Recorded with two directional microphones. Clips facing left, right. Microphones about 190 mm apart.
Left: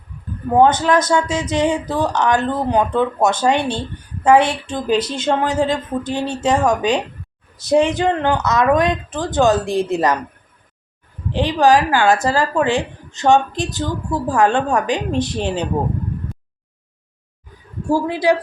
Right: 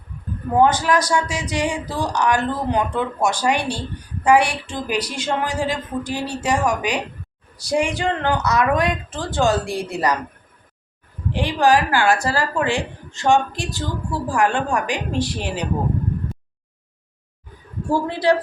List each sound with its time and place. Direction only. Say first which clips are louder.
0.6 s speech: left 3 dB; 25° left (ahead or behind)
11.3 s speech: left 3 dB; 20° left (ahead or behind)
18.0 s speech: left 1 dB; 15° left (ahead or behind)